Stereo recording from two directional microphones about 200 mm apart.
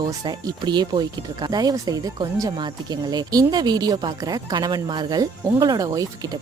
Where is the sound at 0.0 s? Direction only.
20° right (ahead or behind).